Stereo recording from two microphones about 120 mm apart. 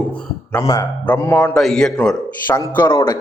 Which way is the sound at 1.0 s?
15° left (ahead or behind).